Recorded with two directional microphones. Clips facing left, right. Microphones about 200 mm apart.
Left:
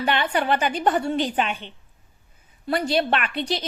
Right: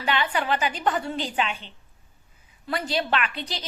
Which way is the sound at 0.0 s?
55° left (ahead or behind).